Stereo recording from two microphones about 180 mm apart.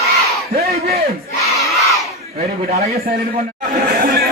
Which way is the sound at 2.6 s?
55° right (ahead or behind).